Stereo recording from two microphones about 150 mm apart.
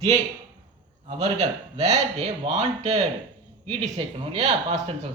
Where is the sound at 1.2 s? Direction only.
45° right (ahead or behind).